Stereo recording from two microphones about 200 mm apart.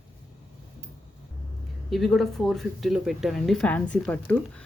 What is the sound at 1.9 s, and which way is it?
Speech, centre (ahead or behind).